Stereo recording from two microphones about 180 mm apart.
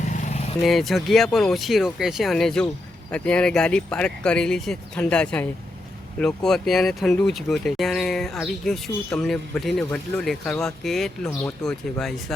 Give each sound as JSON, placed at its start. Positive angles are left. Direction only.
{"t": 0.0, "sound": "vehicle", "side_deg": 45}
{"t": 0.6, "sound": "speech", "side_deg": 0}